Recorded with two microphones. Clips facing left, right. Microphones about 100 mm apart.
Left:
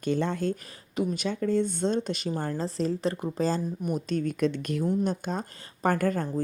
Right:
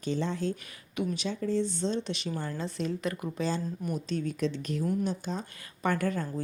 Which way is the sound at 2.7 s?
35° left (ahead or behind).